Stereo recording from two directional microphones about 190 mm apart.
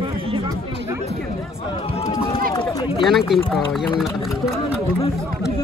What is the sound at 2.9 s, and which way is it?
Speech, centre (ahead or behind).